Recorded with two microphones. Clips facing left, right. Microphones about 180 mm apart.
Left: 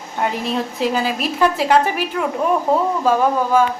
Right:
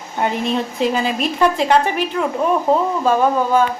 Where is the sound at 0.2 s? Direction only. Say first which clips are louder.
Right 2 dB; centre (ahead or behind).